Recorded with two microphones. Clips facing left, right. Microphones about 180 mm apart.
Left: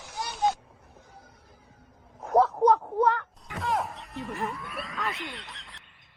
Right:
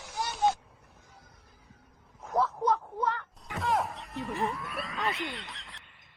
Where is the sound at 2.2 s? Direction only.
65° left (ahead or behind).